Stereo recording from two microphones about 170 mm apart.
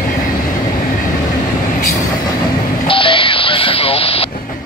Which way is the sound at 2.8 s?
30° left (ahead or behind).